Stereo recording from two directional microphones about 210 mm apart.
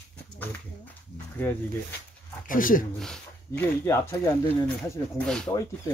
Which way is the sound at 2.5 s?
40° left (ahead or behind).